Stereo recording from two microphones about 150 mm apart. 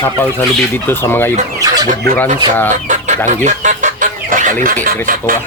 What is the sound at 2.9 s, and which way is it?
Chicken, 55° right (ahead or behind).